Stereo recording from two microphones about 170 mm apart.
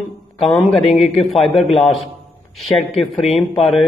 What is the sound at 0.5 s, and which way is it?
Speech, 5° left (ahead or behind).